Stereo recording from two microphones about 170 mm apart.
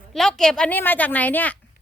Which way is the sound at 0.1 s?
5° left (ahead or behind).